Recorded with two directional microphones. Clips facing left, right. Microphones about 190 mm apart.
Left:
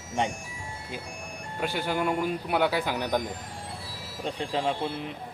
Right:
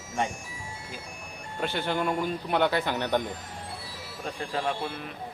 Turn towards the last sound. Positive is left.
turn(degrees=20)  # may be behind; listen again after turning